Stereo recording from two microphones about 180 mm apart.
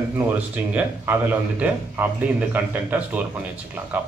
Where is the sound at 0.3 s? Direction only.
10° right (ahead or behind).